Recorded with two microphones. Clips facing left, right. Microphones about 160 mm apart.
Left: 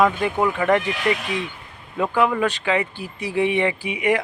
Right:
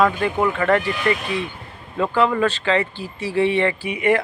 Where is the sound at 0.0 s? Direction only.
15° left (ahead or behind).